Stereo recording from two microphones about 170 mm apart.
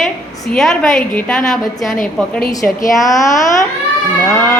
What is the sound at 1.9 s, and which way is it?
Speech, 55° left (ahead or behind).